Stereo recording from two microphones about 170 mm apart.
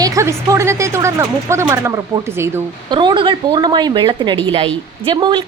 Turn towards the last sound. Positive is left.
turn(degrees=-30)  # may be behind; listen again after turning